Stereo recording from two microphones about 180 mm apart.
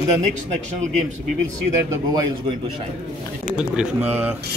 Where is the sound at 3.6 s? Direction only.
5° right (ahead or behind).